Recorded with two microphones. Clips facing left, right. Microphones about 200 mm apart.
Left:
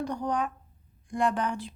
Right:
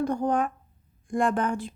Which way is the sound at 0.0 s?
50° right (ahead or behind).